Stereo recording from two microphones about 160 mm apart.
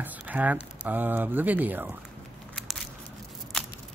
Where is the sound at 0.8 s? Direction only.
10° right (ahead or behind).